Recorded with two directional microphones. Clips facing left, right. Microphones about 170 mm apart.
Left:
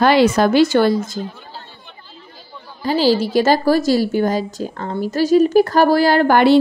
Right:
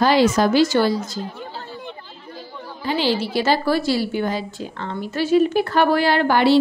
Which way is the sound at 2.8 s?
40° left (ahead or behind).